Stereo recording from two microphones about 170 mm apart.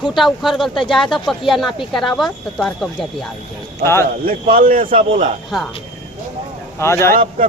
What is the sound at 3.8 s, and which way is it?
Speech, 15° left (ahead or behind).